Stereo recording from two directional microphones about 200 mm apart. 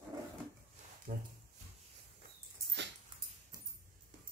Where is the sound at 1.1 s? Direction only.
40° right (ahead or behind).